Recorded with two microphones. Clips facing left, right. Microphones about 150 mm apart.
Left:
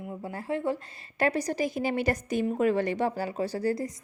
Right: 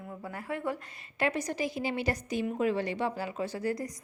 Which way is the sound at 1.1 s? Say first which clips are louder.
Left 4 dB; 40° left (ahead or behind).